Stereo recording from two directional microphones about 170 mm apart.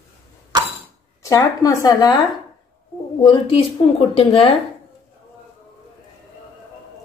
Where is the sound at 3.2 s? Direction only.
30° left (ahead or behind).